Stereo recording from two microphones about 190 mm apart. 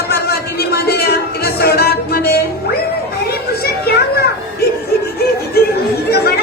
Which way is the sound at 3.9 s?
55° left (ahead or behind).